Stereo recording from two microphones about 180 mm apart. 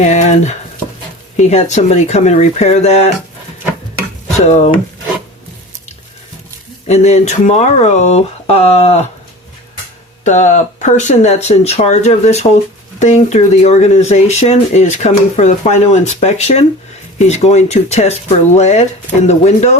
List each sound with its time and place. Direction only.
0.0 s speech: 40° left (ahead or behind)
4.4 s speech: 40° left (ahead or behind)
6.8 s speech: 40° left (ahead or behind)
10.2 s speech: 40° left (ahead or behind)